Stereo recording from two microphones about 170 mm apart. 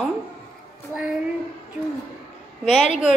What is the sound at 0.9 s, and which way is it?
Speech, centre (ahead or behind).